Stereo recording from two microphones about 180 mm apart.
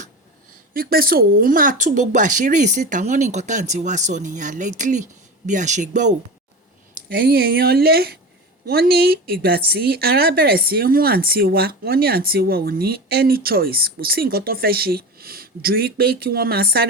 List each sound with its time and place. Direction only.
0.7 s speech: 55° right (ahead or behind)
7.1 s a woman's voice: 60° right (ahead or behind)